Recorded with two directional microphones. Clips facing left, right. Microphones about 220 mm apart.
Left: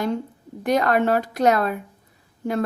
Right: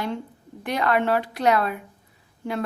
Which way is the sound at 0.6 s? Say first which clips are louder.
Left 4 dB; 45° left (ahead or behind).